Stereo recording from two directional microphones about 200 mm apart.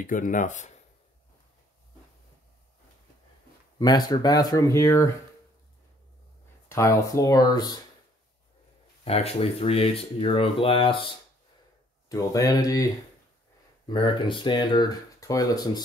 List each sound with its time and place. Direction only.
0.0 s speech: 40° left (ahead or behind)
3.8 s speech: 20° left (ahead or behind)
6.7 s speech: 15° left (ahead or behind)
9.0 s speech: 30° left (ahead or behind)
12.1 s speech: 20° left (ahead or behind)
13.8 s speech: 25° left (ahead or behind)